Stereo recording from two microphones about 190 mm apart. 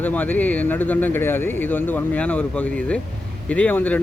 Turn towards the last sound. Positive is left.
turn(degrees=10)  # may be behind; listen again after turning